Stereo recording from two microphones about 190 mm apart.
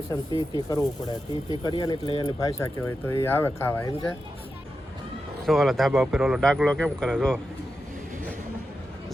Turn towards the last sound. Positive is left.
turn(degrees=5)  # may be behind; listen again after turning